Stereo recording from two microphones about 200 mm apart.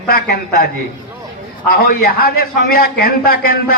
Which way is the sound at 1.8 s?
45° left (ahead or behind).